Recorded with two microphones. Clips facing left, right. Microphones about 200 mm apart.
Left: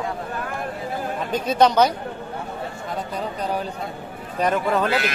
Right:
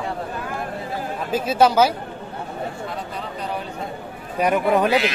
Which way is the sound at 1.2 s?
5° right (ahead or behind).